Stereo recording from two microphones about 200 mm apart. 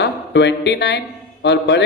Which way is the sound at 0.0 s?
60° left (ahead or behind).